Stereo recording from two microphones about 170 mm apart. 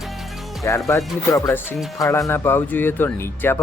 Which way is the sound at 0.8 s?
20° left (ahead or behind).